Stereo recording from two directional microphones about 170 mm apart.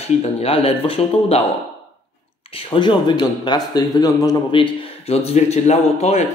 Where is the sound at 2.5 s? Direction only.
30° left (ahead or behind).